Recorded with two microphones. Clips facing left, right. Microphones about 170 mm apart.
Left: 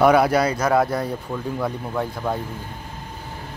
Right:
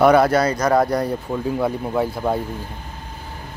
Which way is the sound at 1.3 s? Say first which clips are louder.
Right 4 dB; 10° right (ahead or behind).